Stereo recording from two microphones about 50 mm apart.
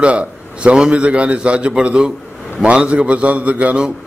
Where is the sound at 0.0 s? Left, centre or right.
Right.